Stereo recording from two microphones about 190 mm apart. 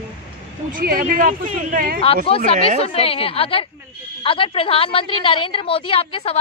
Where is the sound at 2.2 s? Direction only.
30° left (ahead or behind).